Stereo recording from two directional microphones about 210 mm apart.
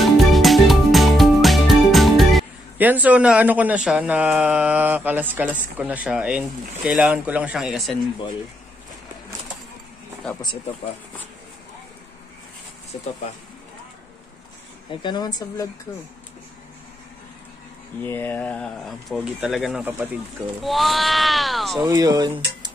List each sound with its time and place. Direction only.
0.0 s music: centre (ahead or behind)
12.9 s speech: 30° left (ahead or behind)
15.0 s speech: 20° left (ahead or behind)
18.0 s speech: 10° left (ahead or behind)
21.8 s speech: 20° right (ahead or behind)